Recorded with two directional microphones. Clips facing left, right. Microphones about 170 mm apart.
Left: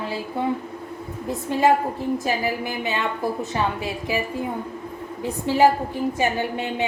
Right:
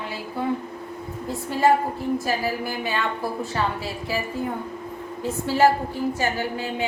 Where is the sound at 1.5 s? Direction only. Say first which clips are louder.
Left 1 dB; 20° left (ahead or behind).